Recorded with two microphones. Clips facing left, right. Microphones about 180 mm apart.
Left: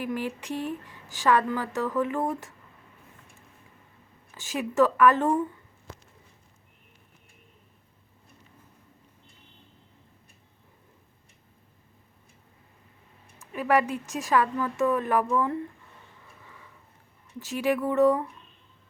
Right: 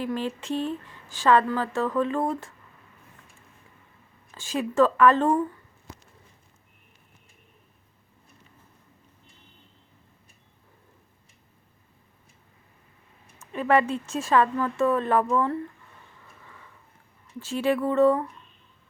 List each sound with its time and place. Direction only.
0.0 s speech: 15° left (ahead or behind)
4.4 s speech: 15° left (ahead or behind)
13.5 s speech: 10° left (ahead or behind)
17.4 s speech: 15° left (ahead or behind)